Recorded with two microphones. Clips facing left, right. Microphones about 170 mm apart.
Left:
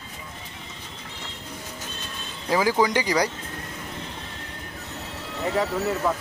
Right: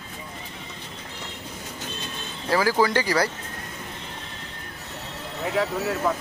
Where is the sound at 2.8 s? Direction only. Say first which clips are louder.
Even; 15° left (ahead or behind).